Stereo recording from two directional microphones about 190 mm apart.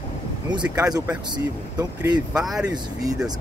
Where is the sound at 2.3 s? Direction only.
5° right (ahead or behind).